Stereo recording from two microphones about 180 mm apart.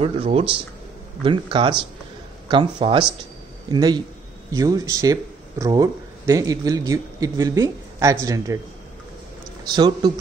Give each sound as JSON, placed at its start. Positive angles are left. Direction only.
{"t": 0.0, "sound": "speech", "side_deg": -35}
{"t": 9.7, "sound": "speech", "side_deg": -25}